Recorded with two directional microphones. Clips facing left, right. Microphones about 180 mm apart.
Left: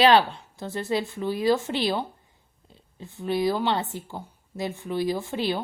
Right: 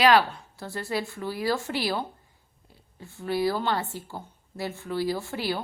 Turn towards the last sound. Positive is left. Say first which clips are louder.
# left 3 dB
turn(degrees=20)  # may be behind; listen again after turning